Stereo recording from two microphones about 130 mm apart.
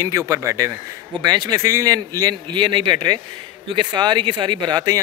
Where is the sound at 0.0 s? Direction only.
25° right (ahead or behind).